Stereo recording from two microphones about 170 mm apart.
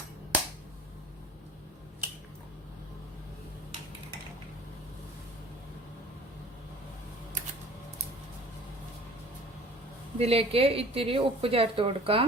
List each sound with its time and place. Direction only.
10.2 s a woman's voice: 35° right (ahead or behind)